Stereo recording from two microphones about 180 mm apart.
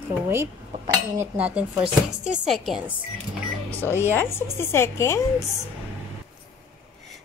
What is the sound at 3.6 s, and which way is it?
A woman's voice, 10° left (ahead or behind).